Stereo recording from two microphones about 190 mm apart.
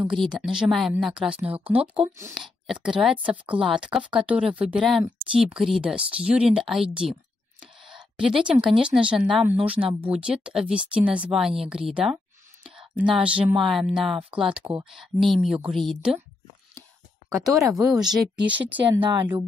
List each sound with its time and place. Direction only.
0.0 s speech: 5° right (ahead or behind)
17.3 s speech: centre (ahead or behind)
18.9 s speech: 25° right (ahead or behind)